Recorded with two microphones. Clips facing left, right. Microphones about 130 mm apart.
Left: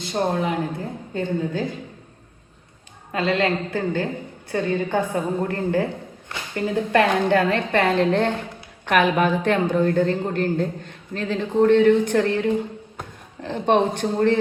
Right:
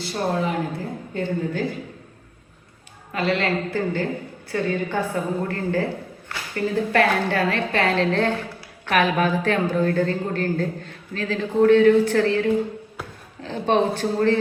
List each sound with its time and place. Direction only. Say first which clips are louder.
0.0 s a woman's voice: left 1 dB; 20° left (ahead or behind)
3.1 s a woman's voice: left 1 dB; 20° left (ahead or behind)